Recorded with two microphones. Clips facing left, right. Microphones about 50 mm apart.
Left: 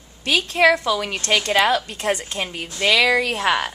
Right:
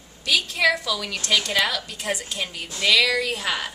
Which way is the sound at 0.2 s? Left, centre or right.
Left.